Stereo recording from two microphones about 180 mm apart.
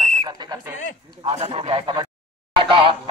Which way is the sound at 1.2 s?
35° right (ahead or behind).